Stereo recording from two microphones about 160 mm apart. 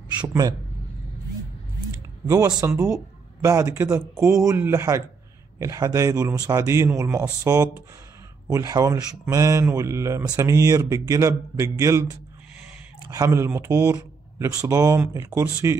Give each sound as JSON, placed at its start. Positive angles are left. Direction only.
{"t": 0.3, "sound": "speech", "side_deg": -20}
{"t": 2.2, "sound": "speech", "side_deg": -20}